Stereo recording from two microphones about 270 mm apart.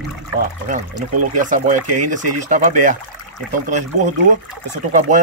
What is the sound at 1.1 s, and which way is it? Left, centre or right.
Speech, right.